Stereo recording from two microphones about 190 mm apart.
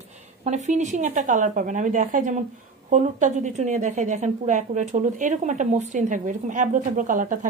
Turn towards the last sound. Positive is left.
turn(degrees=-45)  # may be behind; listen again after turning